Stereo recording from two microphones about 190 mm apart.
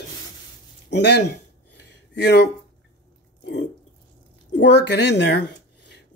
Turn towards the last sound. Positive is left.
turn(degrees=65)  # may be behind; listen again after turning